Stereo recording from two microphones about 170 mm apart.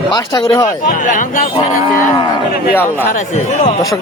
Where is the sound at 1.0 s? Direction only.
50° left (ahead or behind).